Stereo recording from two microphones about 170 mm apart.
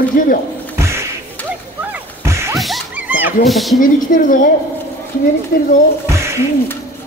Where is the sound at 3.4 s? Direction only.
Centre (ahead or behind).